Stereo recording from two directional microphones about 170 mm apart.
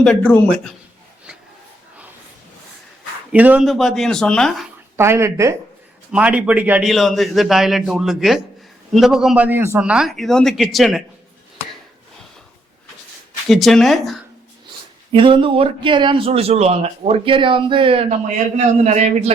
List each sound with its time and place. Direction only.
0.0 s a man's voice: 5° left (ahead or behind)
3.3 s a man's voice: 10° right (ahead or behind)
4.9 s a man's voice: 15° right (ahead or behind)
13.5 s a man's voice: centre (ahead or behind)
15.1 s speech: 30° right (ahead or behind)